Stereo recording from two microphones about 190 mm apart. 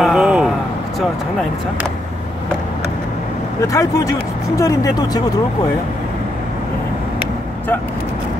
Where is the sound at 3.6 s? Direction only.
15° left (ahead or behind).